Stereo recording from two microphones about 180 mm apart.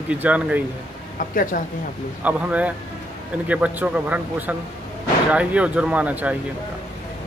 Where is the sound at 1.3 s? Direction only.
50° left (ahead or behind).